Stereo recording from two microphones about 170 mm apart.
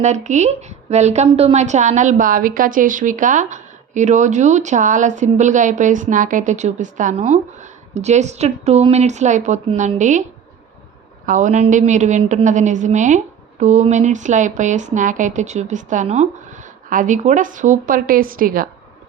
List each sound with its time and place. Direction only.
0.0 s a woman's voice: 45° right (ahead or behind)
11.3 s a woman's voice: 45° right (ahead or behind)